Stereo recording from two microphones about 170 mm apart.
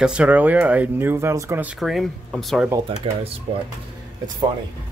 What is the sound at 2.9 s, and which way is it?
Speech, 30° right (ahead or behind).